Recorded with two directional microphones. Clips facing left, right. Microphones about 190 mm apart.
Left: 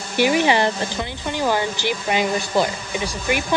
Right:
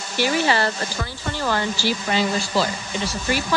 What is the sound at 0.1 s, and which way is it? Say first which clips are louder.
Speech: left 3 dB; 15° left (ahead or behind).